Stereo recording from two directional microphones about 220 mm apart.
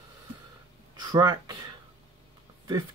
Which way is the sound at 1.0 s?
20° right (ahead or behind).